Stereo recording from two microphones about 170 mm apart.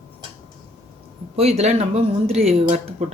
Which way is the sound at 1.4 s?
40° right (ahead or behind).